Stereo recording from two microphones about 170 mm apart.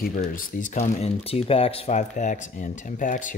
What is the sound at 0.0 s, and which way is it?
Speech, 55° left (ahead or behind).